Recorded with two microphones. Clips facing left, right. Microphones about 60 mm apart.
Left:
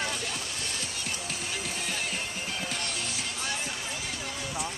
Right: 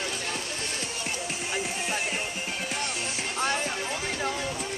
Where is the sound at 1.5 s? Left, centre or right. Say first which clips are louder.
Right 5 dB; right.